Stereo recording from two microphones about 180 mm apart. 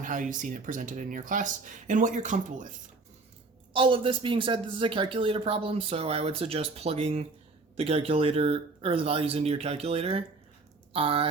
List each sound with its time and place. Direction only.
0.0 s speech: 45° right (ahead or behind)
3.7 s speech: 30° right (ahead or behind)